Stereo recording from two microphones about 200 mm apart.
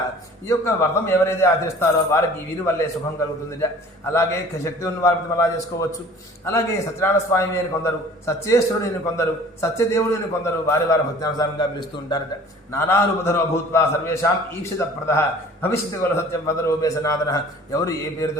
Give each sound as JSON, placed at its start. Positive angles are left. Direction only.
{"t": 0.4, "sound": "a man's voice", "side_deg": 15}
{"t": 4.1, "sound": "a man's voice", "side_deg": 15}
{"t": 7.0, "sound": "a man's voice", "side_deg": 15}